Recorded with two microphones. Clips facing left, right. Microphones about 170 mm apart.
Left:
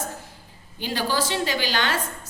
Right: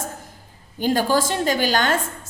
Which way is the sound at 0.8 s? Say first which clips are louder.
Right 6 dB; 45° right (ahead or behind).